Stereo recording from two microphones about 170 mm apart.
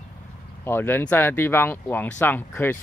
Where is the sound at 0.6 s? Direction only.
15° left (ahead or behind).